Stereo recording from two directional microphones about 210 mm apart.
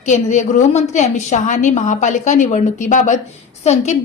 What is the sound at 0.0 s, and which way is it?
A woman's voice, 35° left (ahead or behind).